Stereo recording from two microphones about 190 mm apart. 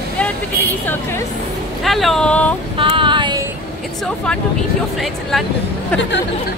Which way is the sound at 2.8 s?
25° right (ahead or behind).